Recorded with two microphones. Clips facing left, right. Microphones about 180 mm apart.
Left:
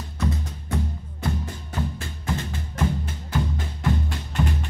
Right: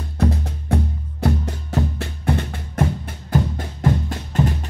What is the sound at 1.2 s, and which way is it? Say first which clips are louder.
Music: right 7 dB; 75° right (ahead or behind).